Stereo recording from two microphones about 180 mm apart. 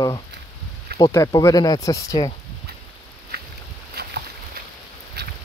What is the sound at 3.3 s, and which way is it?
Boat, 60° right (ahead or behind).